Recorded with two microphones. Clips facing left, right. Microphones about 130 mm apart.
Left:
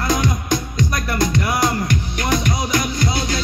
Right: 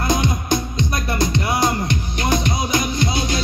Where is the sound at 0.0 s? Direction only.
25° right (ahead or behind).